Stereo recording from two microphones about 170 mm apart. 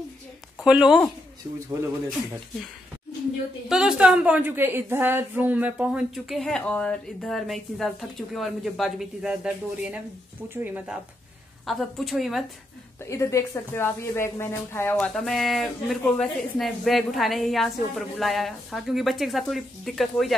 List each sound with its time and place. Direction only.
0.7 s a woman's voice: 5° right (ahead or behind)
3.6 s a woman's voice: centre (ahead or behind)
11.6 s a woman's voice: centre (ahead or behind)
13.0 s speech: 15° left (ahead or behind)
15.1 s a woman's voice: centre (ahead or behind)